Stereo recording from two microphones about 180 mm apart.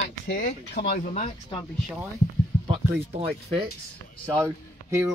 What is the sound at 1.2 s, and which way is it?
Speech, 25° left (ahead or behind).